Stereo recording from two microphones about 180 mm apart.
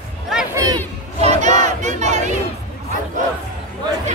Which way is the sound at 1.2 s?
40° right (ahead or behind).